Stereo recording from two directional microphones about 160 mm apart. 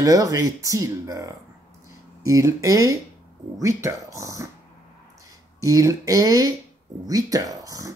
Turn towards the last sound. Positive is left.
turn(degrees=-20)  # may be behind; listen again after turning